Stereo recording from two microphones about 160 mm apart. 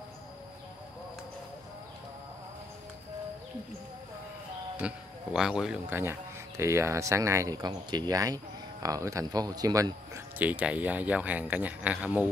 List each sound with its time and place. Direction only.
4.7 s speech: 5° right (ahead or behind); by 10.2 s 20° right (ahead or behind)
10.4 s speech: 10° right (ahead or behind)